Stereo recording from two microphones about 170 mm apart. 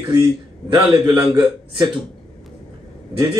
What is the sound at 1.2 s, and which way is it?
Speech, 25° right (ahead or behind).